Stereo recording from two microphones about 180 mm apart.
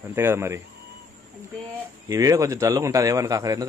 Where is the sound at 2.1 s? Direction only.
20° right (ahead or behind).